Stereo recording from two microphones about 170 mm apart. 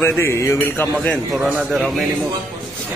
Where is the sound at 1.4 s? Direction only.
5° right (ahead or behind).